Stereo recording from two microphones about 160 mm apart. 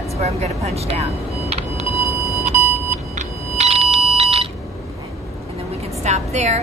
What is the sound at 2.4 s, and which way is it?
Vehicle, 50° right (ahead or behind).